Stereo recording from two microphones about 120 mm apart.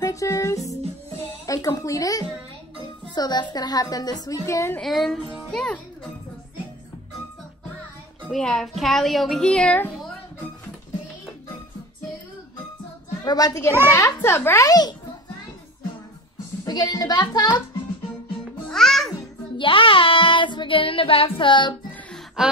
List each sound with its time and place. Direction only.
0.0 s music: 25° left (ahead or behind)
1.4 s a woman's voice: 30° left (ahead or behind)
4.7 s a child's voice: centre (ahead or behind)
8.3 s speech: 5° left (ahead or behind)
13.2 s a woman's voice: 30° left (ahead or behind)
16.6 s a woman's voice: 35° left (ahead or behind)
18.7 s music: 5° left (ahead or behind)
19.5 s child singing: 45° left (ahead or behind)
22.4 s a sound: 5° right (ahead or behind)